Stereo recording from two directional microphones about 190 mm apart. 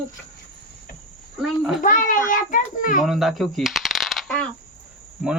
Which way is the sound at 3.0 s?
Centre (ahead or behind).